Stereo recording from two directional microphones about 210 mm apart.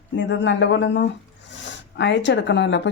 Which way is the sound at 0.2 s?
60° left (ahead or behind).